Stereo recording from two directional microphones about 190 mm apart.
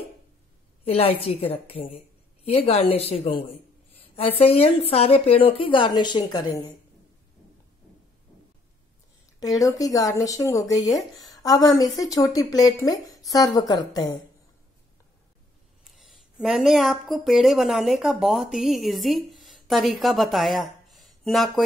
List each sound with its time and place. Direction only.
0.8 s a woman's voice: 30° left (ahead or behind)
9.4 s speech: 20° left (ahead or behind)
16.3 s a woman's voice: centre (ahead or behind)